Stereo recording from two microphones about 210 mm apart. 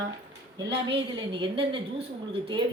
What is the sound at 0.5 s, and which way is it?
Speech, 20° right (ahead or behind).